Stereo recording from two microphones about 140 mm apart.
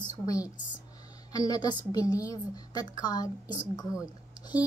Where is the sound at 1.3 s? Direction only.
30° left (ahead or behind).